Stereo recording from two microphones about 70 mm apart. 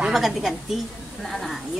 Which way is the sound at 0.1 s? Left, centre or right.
Centre.